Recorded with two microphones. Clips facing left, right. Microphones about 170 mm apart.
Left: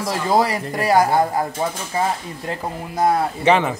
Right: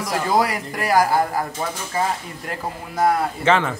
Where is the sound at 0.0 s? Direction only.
25° left (ahead or behind).